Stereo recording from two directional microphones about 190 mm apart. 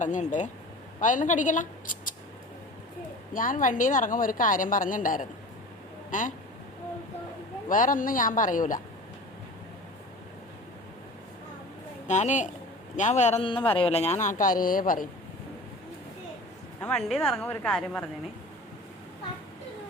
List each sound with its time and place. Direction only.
0.0 s a man's voice: 40° left (ahead or behind)
3.3 s a woman's voice: 45° left (ahead or behind)
7.7 s a woman's voice: 45° left (ahead or behind)
12.0 s a man's voice: 40° left (ahead or behind)
16.8 s a woman's voice: 5° left (ahead or behind)